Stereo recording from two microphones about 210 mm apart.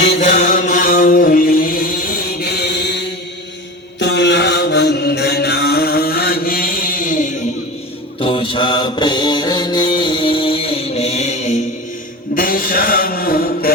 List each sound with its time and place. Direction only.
0.2 s chant: 35° left (ahead or behind); by 3.1 s 55° left (ahead or behind)
4.0 s mantra: 55° left (ahead or behind); by 7.3 s 40° left (ahead or behind)
8.2 s mantra: 25° left (ahead or behind); by 13.7 s 45° left (ahead or behind)